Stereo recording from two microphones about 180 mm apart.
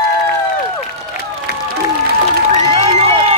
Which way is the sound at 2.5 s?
35° right (ahead or behind).